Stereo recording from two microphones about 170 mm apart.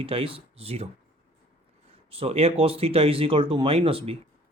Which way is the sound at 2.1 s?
35° right (ahead or behind).